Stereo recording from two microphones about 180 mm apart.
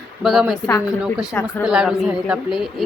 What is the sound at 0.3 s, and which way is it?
Speech, centre (ahead or behind).